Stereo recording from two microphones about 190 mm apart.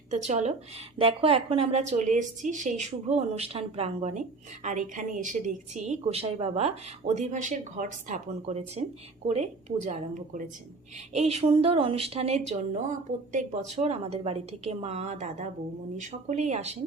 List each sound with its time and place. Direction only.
0.3 s a woman's voice: 35° right (ahead or behind)